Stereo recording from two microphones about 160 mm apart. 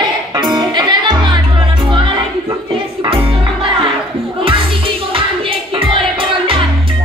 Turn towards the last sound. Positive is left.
turn(degrees=-35)  # may be behind; listen again after turning